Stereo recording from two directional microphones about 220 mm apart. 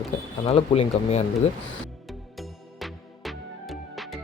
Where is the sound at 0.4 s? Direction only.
25° left (ahead or behind).